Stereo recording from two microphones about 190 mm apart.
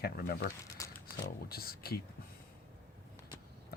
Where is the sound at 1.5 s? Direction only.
55° left (ahead or behind).